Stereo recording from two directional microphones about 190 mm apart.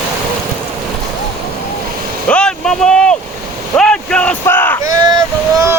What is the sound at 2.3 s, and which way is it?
Vehicle, 5° left (ahead or behind).